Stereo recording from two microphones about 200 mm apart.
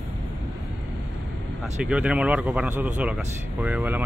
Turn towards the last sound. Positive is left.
turn(degrees=-10)  # may be behind; listen again after turning